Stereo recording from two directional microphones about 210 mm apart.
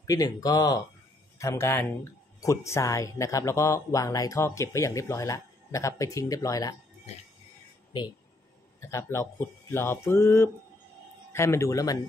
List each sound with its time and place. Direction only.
0.0 s speech: 15° left (ahead or behind)
8.8 s speech: 15° left (ahead or behind)